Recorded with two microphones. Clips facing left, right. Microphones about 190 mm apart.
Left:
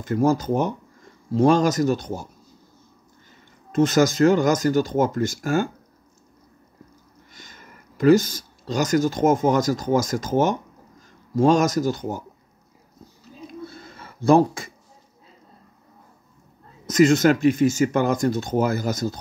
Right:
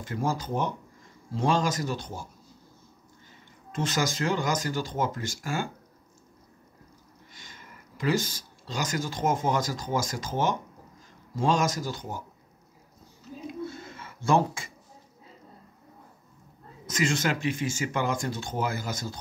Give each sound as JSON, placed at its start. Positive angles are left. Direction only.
{"t": 0.0, "sound": "speech", "side_deg": 45}
{"t": 3.7, "sound": "speech", "side_deg": 45}
{"t": 7.3, "sound": "speech", "side_deg": 45}
{"t": 13.7, "sound": "a sound", "side_deg": 35}
{"t": 16.8, "sound": "speech", "side_deg": 40}